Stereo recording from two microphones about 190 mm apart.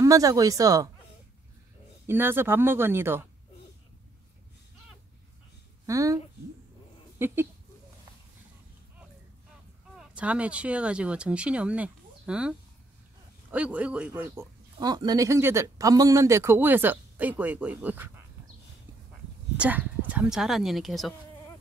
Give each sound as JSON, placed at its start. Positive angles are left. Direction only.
{"t": 0.0, "sound": "speech", "side_deg": -15}
{"t": 2.0, "sound": "speech", "side_deg": -10}
{"t": 5.9, "sound": "speech", "side_deg": -15}
{"t": 7.2, "sound": "speech", "side_deg": -10}
{"t": 9.9, "sound": "speech", "side_deg": -5}
{"t": 19.5, "sound": "speech", "side_deg": -10}